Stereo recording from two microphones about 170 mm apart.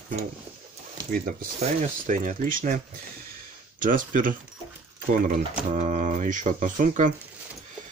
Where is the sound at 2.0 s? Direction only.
50° right (ahead or behind).